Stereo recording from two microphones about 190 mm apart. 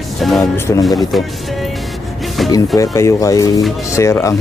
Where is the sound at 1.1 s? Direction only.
Centre (ahead or behind).